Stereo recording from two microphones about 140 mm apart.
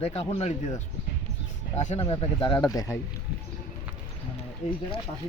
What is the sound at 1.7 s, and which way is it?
Speech, 50° left (ahead or behind).